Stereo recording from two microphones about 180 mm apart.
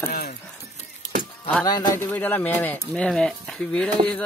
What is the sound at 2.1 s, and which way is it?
Speech, 10° left (ahead or behind).